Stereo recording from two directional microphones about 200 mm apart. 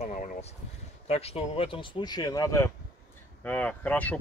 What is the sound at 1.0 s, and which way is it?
Speech, 30° left (ahead or behind).